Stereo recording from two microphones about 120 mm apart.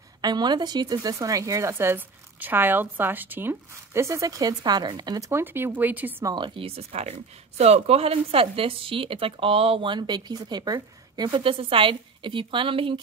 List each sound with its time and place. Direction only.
0.2 s speech: 35° right (ahead or behind)
5.3 s speech: 15° right (ahead or behind)
6.2 s speech: 40° right (ahead or behind)